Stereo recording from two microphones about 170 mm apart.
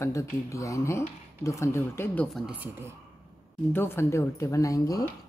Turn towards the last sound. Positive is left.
turn(degrees=20)  # may be behind; listen again after turning